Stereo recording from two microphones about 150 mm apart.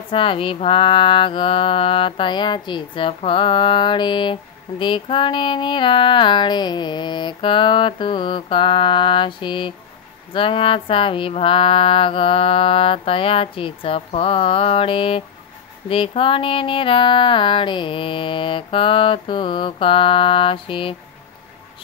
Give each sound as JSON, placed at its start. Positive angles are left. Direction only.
{"t": 0.1, "sound": "mantra", "side_deg": 35}